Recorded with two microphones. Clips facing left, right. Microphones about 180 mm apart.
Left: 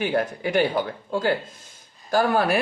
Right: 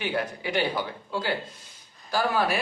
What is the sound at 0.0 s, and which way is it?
Speech, 50° left (ahead or behind).